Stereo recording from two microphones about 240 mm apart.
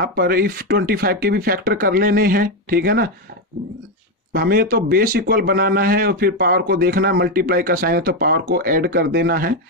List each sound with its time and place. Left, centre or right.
0.0 s a man's voice: right
4.3 s a man's voice: right